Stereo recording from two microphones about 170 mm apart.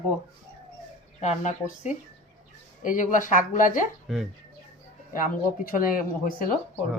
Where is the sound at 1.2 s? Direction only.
45° left (ahead or behind).